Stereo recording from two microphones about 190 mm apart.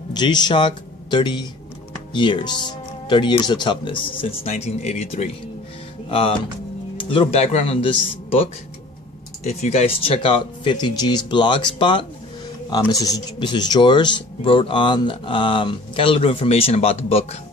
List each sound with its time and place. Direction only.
0.1 s speech: 20° left (ahead or behind)